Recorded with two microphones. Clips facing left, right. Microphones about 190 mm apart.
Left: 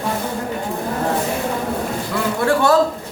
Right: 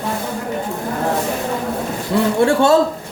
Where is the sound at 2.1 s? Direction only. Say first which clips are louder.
Right 5 dB; 25° right (ahead or behind).